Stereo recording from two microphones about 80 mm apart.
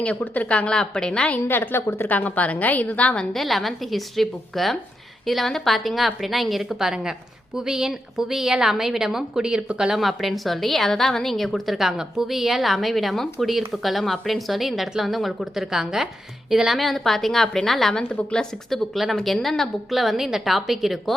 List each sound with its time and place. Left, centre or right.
0.0 s a woman's voice: centre
1.5 s a woman's voice: left
3.3 s a woman's voice: centre
18.9 s a woman's voice: centre